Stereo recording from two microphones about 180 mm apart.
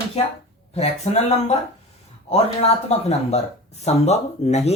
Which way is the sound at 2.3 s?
35° left (ahead or behind).